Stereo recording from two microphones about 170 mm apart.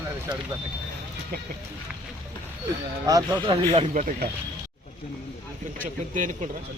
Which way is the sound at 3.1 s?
25° right (ahead or behind).